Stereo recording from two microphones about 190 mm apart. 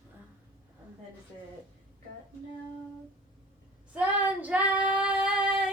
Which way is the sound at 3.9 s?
10° right (ahead or behind).